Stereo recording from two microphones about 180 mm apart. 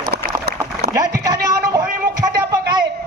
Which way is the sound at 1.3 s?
20° right (ahead or behind).